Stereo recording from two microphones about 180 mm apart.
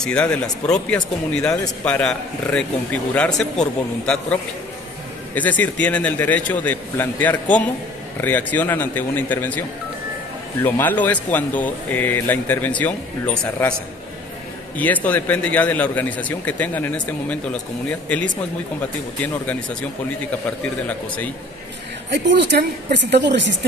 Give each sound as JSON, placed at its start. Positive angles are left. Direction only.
{"t": 0.0, "sound": "a man's voice", "side_deg": 5}
{"t": 14.8, "sound": "speech", "side_deg": 10}
{"t": 22.1, "sound": "a woman's voice", "side_deg": -70}